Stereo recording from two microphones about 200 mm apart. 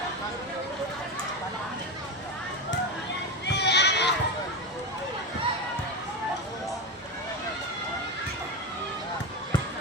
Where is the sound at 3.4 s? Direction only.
60° left (ahead or behind).